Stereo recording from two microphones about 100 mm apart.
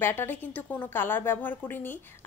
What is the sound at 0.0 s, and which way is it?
A woman's voice, 20° left (ahead or behind).